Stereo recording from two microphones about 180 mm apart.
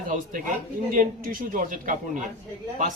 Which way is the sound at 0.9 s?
50° right (ahead or behind).